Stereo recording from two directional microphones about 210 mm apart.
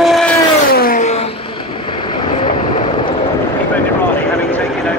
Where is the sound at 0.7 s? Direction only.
45° left (ahead or behind).